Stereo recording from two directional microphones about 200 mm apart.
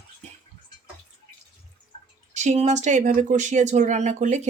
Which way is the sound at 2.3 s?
35° right (ahead or behind).